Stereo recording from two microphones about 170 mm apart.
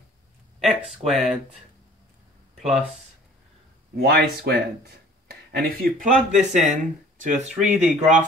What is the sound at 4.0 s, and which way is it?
Speech, 65° right (ahead or behind).